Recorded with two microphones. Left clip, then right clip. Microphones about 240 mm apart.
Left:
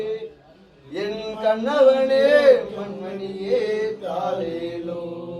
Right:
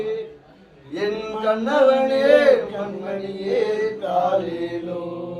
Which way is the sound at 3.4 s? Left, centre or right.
Centre.